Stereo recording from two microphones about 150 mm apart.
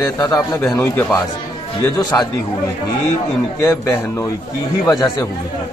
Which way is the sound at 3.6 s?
20° left (ahead or behind).